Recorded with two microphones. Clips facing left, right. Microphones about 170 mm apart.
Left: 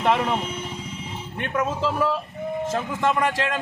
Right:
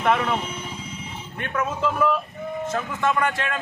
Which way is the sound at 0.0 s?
25° left (ahead or behind).